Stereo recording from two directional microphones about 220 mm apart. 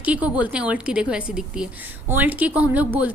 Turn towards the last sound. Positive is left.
turn(degrees=-5)  # may be behind; listen again after turning